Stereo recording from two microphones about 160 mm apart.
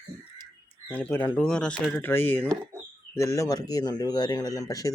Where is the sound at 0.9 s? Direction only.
10° left (ahead or behind).